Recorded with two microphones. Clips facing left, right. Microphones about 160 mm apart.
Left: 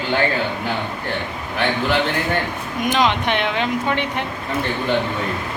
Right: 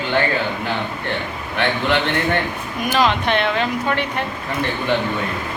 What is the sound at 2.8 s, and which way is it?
A woman's voice, 20° left (ahead or behind).